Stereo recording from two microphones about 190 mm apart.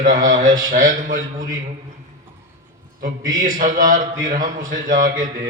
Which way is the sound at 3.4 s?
45° right (ahead or behind).